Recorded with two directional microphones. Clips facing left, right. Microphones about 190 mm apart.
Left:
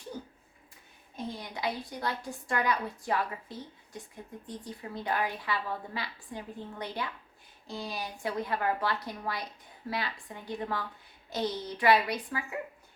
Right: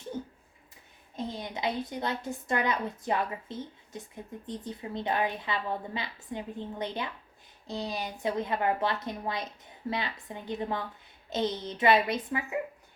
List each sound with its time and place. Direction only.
1.1 s a woman's voice: 20° right (ahead or behind)